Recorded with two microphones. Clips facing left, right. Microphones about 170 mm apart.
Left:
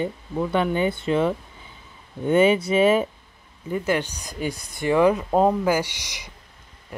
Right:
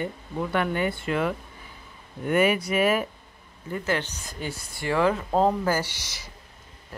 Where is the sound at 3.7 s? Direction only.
15° left (ahead or behind).